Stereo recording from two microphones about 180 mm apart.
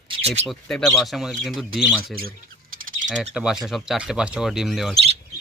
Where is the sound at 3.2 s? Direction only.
5° right (ahead or behind).